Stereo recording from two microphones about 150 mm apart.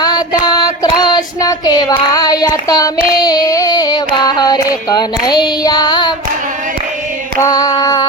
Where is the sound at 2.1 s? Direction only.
25° left (ahead or behind).